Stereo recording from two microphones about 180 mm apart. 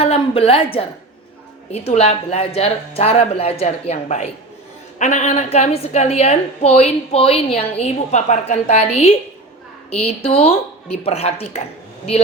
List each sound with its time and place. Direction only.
0.0 s a woman's voice: 35° left (ahead or behind)
1.7 s a woman's voice: 35° left (ahead or behind)